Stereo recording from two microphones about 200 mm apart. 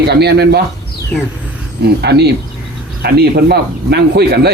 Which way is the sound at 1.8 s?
55° right (ahead or behind).